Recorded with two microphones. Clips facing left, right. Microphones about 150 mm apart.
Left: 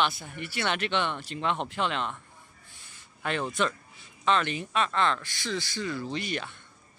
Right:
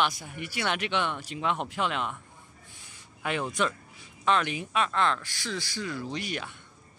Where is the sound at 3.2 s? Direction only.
5° right (ahead or behind).